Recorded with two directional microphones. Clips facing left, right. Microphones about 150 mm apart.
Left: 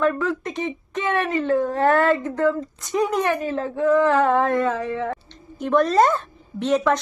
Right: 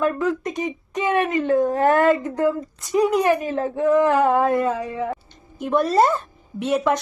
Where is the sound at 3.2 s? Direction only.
15° right (ahead or behind).